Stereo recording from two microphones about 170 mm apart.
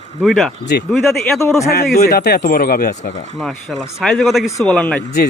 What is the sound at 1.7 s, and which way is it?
Speech, 65° left (ahead or behind).